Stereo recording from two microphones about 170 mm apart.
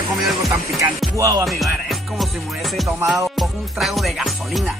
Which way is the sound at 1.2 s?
15° right (ahead or behind).